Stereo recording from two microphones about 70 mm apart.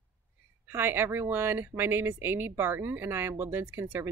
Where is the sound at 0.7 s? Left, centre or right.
Right.